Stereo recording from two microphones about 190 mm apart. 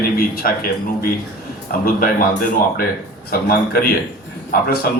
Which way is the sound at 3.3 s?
50° left (ahead or behind).